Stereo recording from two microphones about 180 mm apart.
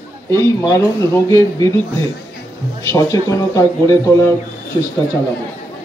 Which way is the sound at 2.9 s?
20° left (ahead or behind).